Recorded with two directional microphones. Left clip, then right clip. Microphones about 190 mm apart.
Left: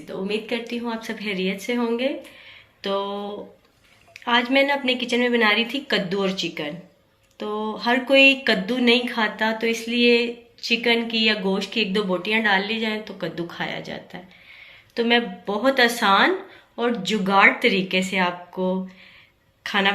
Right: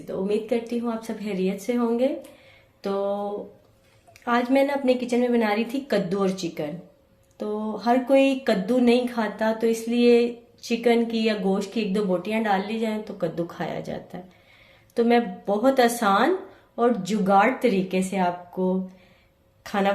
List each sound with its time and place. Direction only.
0.3 s speech: 55° right (ahead or behind)
4.1 s a woman's voice: 40° right (ahead or behind)
18.5 s speech: 10° right (ahead or behind)
19.6 s a woman's voice: 40° right (ahead or behind)